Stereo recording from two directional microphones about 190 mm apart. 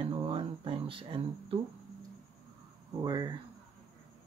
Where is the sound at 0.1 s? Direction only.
25° right (ahead or behind).